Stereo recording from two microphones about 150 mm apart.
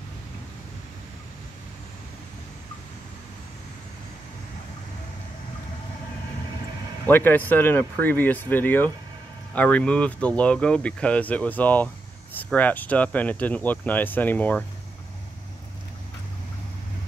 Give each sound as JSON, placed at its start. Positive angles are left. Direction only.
{"t": 7.1, "sound": "speech", "side_deg": 15}